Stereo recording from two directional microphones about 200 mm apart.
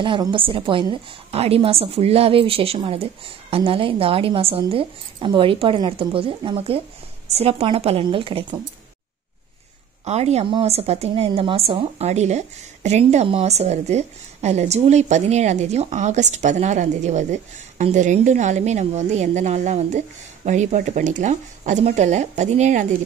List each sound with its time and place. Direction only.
0.0 s a woman's voice: 25° right (ahead or behind)
10.0 s a woman's voice: 35° right (ahead or behind)